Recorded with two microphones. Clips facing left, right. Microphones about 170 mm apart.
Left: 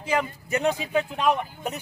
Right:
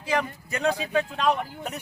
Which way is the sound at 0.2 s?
20° left (ahead or behind).